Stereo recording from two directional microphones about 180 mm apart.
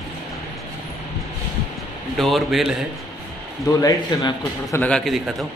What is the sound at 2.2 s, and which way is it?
Speech, centre (ahead or behind).